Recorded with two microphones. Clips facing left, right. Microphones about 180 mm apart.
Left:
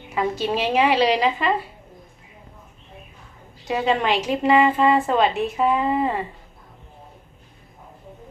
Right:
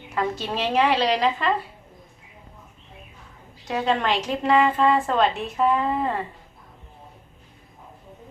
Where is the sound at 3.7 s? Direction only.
10° left (ahead or behind).